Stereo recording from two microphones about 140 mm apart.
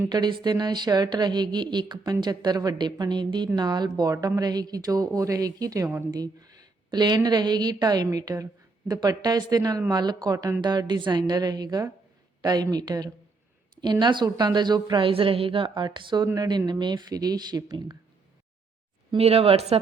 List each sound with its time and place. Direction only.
0.1 s a woman's voice: 30° right (ahead or behind)
19.1 s speech: 45° right (ahead or behind)